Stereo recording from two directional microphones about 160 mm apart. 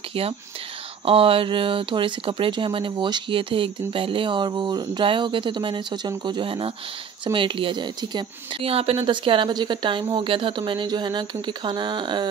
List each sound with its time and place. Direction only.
1.0 s speech: 35° right (ahead or behind)